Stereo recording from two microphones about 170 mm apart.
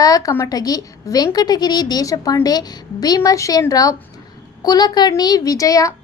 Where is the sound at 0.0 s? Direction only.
20° left (ahead or behind).